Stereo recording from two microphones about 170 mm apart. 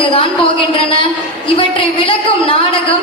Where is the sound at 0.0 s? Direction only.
30° left (ahead or behind).